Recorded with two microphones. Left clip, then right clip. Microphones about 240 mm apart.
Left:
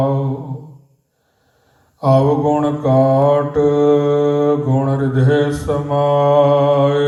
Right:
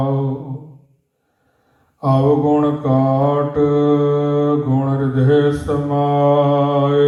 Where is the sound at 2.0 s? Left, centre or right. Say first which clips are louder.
Left 2 dB; left.